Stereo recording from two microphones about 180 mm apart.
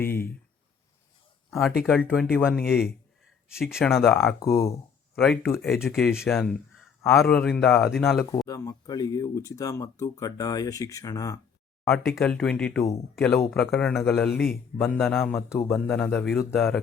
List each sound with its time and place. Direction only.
0.0 s a sound: 10° left (ahead or behind)
1.5 s a man's voice: centre (ahead or behind)
4.4 s speech: 15° left (ahead or behind)
5.1 s a man's voice: centre (ahead or behind)
8.4 s speech: 20° left (ahead or behind)
11.9 s a man's voice: centre (ahead or behind)
15.1 s a man's voice: 10° left (ahead or behind)